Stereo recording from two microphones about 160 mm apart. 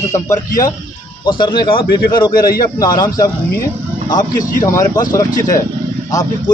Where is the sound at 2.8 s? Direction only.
25° left (ahead or behind).